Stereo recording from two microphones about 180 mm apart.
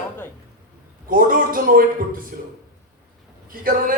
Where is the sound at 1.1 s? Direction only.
50° right (ahead or behind).